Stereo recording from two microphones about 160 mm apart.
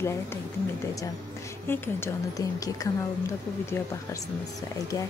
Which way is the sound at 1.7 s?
20° left (ahead or behind).